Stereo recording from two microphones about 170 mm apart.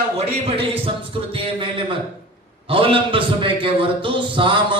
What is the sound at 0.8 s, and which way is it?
A man's voice, 30° right (ahead or behind).